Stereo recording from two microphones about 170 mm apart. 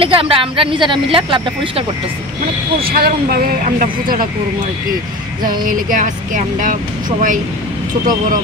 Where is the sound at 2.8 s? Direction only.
65° right (ahead or behind).